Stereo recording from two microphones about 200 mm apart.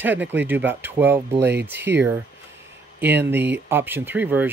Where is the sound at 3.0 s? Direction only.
10° right (ahead or behind).